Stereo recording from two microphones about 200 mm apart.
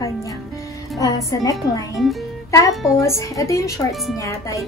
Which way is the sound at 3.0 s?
15° left (ahead or behind).